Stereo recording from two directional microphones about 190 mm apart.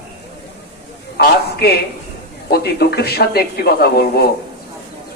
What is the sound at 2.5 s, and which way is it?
Speech, 55° left (ahead or behind).